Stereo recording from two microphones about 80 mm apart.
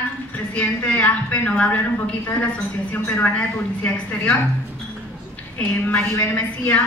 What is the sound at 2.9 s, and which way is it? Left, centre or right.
A woman's voice, centre.